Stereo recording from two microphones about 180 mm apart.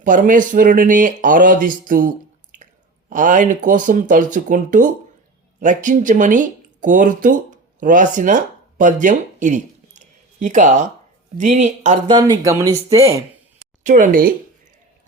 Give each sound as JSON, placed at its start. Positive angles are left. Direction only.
{"t": 0.0, "sound": "speech", "side_deg": -45}
{"t": 12.0, "sound": "speech", "side_deg": -25}
{"t": 13.8, "sound": "speech", "side_deg": -50}